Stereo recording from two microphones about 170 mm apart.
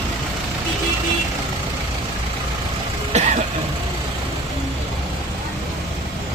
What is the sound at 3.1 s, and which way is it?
Throat clearing, 40° right (ahead or behind).